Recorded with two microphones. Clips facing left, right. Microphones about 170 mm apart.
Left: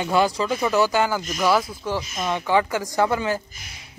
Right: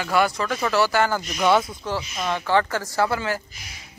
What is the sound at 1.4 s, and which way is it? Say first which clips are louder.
Speech: right 1 dB; centre (ahead or behind).